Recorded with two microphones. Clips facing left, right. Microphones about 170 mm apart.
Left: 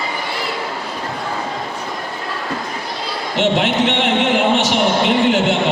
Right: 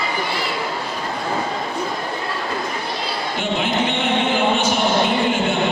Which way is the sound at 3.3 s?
80° left.